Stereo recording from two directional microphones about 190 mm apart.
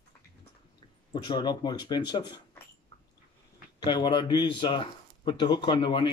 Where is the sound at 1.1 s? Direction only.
20° left (ahead or behind).